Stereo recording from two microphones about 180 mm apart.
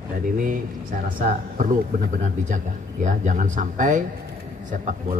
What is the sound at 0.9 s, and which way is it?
Speech, 45° right (ahead or behind).